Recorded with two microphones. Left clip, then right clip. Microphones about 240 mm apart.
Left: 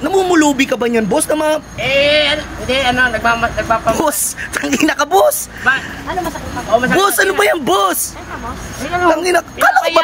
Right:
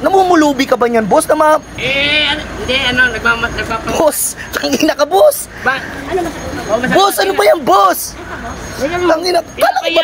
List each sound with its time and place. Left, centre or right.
0.0 s speech: centre
1.9 s speech: centre
6.9 s speech: centre
9.0 s speech: centre